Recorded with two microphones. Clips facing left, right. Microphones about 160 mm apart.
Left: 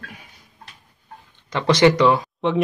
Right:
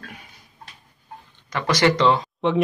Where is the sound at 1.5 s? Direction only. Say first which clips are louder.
Left 5 dB; 25° left (ahead or behind).